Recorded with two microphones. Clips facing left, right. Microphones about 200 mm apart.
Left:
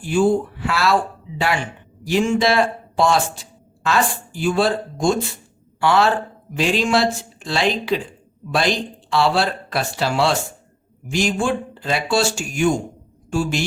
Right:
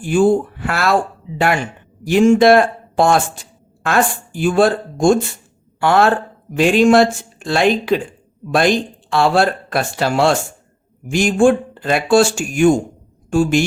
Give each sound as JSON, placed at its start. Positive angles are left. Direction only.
{"t": 0.0, "sound": "speech", "side_deg": -50}
{"t": 2.0, "sound": "speech", "side_deg": -50}